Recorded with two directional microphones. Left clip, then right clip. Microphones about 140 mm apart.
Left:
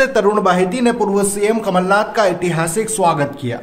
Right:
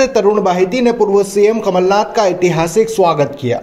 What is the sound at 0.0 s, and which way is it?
A man's voice, 25° right (ahead or behind).